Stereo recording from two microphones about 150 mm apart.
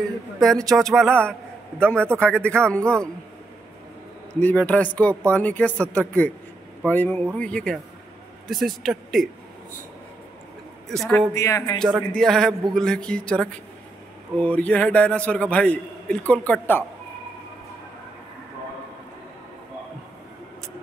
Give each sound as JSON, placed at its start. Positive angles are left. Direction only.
{"t": 0.4, "sound": "a man's voice", "side_deg": 0}
{"t": 4.3, "sound": "a man's voice", "side_deg": 10}
{"t": 11.0, "sound": "a man's voice", "side_deg": 10}
{"t": 11.3, "sound": "speech", "side_deg": 20}
{"t": 11.8, "sound": "a man's voice", "side_deg": 5}